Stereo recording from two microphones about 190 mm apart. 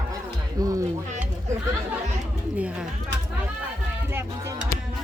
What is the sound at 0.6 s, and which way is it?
Speech, 20° right (ahead or behind).